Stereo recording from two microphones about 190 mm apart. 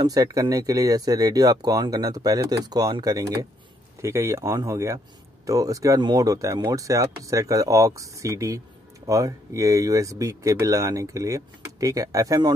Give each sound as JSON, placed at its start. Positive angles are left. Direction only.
{"t": 0.0, "sound": "speech", "side_deg": -20}